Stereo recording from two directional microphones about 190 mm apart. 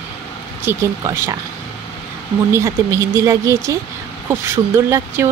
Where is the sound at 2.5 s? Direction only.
15° right (ahead or behind).